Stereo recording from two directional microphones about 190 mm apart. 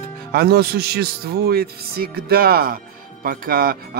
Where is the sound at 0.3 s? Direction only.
55° right (ahead or behind).